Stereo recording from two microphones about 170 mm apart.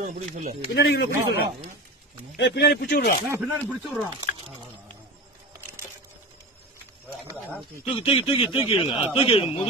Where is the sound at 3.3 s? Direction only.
10° right (ahead or behind).